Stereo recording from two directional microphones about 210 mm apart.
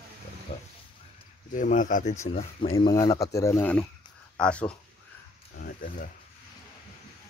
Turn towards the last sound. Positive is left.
turn(degrees=40)  # may be behind; listen again after turning